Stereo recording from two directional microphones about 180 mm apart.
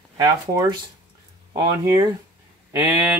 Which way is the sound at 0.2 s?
20° right (ahead or behind).